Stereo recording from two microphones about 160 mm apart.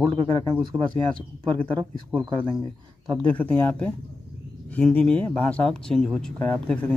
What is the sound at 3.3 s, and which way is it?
Speech, 10° left (ahead or behind).